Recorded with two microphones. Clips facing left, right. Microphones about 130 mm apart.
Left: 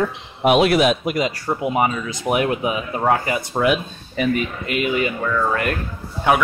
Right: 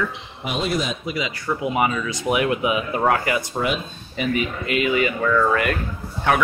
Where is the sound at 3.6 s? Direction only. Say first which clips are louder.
Left 8 dB; 65° left (ahead or behind).